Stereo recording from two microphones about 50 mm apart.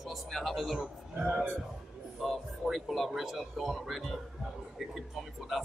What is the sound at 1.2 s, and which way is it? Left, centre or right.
Speech, right.